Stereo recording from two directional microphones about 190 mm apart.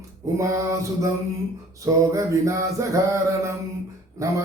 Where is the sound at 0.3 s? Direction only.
15° right (ahead or behind).